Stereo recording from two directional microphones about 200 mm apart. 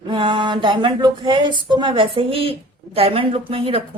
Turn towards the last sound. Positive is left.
turn(degrees=-25)  # may be behind; listen again after turning